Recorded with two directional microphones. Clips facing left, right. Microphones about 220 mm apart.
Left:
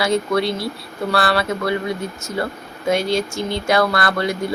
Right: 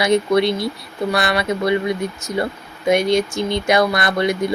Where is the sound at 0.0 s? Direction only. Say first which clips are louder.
Right 3 dB; 20° right (ahead or behind).